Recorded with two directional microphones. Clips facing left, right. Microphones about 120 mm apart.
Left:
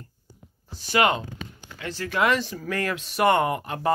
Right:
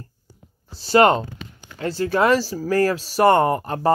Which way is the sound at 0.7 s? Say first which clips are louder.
Right 7 dB; 35° right (ahead or behind).